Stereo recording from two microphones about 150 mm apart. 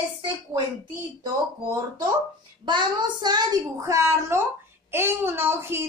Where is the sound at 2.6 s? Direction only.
30° right (ahead or behind).